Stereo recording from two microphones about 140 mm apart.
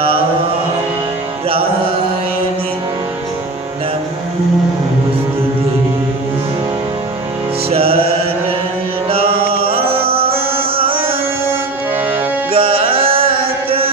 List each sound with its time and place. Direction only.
1.5 s music: 40° right (ahead or behind)
7.7 s mantra: 45° right (ahead or behind)
9.7 s music: 45° right (ahead or behind)
10.8 s carnatic music: 40° right (ahead or behind)
12.5 s music: 40° right (ahead or behind)